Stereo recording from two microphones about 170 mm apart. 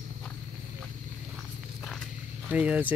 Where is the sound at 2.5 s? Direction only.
5° right (ahead or behind).